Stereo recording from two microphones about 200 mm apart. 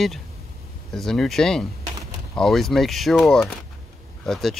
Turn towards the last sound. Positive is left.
turn(degrees=0)  # may be behind; listen again after turning